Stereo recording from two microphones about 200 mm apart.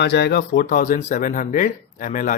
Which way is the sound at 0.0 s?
55° left (ahead or behind).